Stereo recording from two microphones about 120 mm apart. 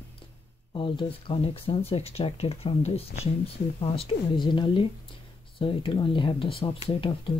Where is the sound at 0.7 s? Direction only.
45° left (ahead or behind).